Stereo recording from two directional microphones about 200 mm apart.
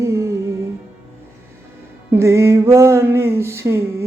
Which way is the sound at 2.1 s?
15° right (ahead or behind).